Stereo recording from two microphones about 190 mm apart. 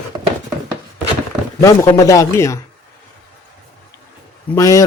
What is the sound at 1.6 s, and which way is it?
Speech, 15° left (ahead or behind).